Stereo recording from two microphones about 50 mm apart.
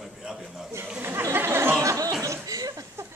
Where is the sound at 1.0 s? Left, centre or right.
Right.